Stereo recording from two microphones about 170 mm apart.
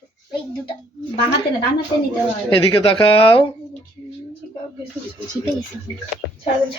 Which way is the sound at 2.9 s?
30° left (ahead or behind).